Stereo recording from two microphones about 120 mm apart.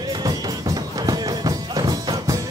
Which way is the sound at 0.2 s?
30° right (ahead or behind).